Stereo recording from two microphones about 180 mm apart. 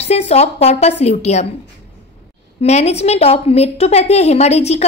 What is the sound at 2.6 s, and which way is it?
A woman's voice, 35° left (ahead or behind).